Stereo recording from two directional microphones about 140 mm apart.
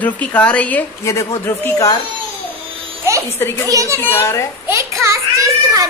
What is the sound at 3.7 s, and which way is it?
Speech, 20° right (ahead or behind).